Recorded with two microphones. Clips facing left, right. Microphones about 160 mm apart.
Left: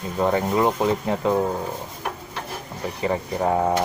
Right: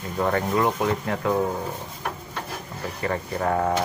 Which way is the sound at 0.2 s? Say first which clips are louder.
Left 2 dB; 20° left (ahead or behind).